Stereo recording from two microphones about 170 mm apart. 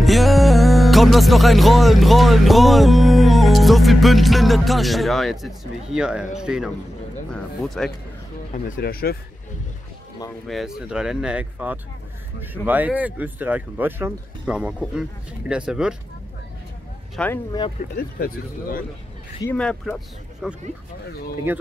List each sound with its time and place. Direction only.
0.0 s music: centre (ahead or behind)
6.3 s speech: 5° right (ahead or behind)
7.3 s music: centre (ahead or behind)
8.6 s speech: 60° left (ahead or behind)
10.4 s speech: centre (ahead or behind)
17.1 s speech: 10° left (ahead or behind)
17.9 s speech: 55° left (ahead or behind)
19.5 s speech: 5° left (ahead or behind); by 21.6 s 10° right (ahead or behind)